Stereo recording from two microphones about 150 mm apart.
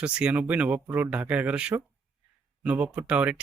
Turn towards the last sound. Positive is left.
turn(degrees=-10)  # may be behind; listen again after turning